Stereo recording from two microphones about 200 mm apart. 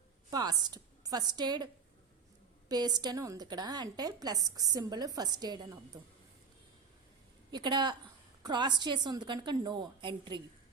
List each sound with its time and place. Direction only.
0.3 s a woman's voice: 20° right (ahead or behind)
7.5 s a woman's voice: 20° right (ahead or behind)